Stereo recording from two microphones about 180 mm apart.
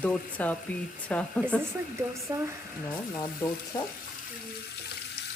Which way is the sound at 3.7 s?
20° left (ahead or behind).